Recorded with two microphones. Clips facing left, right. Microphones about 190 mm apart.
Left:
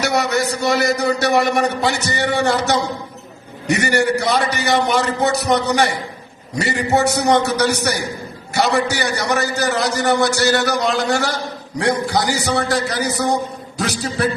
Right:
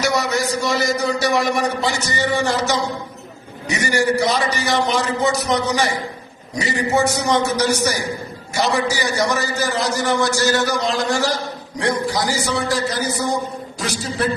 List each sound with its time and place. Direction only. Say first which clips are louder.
0.0 s a man's voice: left 1 dB; 65° left (ahead or behind)
12.5 s a man's voice: left 2 dB; 65° left (ahead or behind)